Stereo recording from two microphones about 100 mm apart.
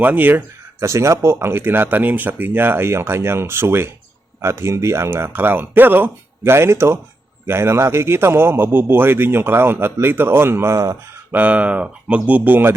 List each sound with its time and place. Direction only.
0.0 s speech: 15° right (ahead or behind)
11.3 s speech: 15° right (ahead or behind)